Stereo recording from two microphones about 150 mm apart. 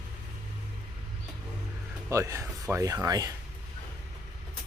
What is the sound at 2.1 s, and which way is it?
Speech, 20° right (ahead or behind).